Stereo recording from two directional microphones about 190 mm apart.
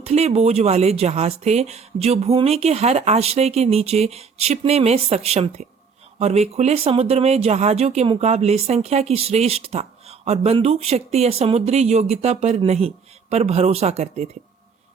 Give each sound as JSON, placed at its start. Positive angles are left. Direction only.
{"t": 0.0, "sound": "speech", "side_deg": -35}